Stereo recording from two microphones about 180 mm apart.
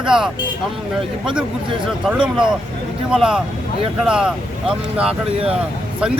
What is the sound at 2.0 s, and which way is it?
Speech, 5° right (ahead or behind).